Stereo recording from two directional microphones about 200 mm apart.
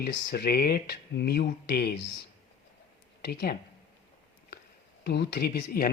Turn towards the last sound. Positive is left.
turn(degrees=50)  # may be behind; listen again after turning